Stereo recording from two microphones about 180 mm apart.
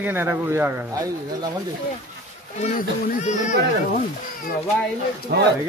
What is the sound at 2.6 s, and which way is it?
Speech, 40° left (ahead or behind).